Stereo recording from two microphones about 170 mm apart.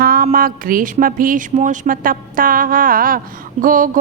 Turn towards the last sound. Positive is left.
turn(degrees=-50)  # may be behind; listen again after turning